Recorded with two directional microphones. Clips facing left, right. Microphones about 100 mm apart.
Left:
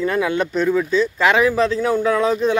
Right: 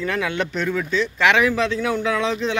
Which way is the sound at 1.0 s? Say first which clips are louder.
Even; 35° left (ahead or behind).